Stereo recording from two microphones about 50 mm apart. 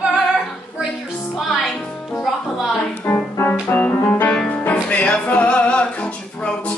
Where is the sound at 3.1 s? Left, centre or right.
Left.